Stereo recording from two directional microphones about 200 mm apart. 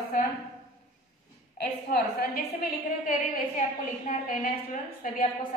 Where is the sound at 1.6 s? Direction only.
55° left (ahead or behind).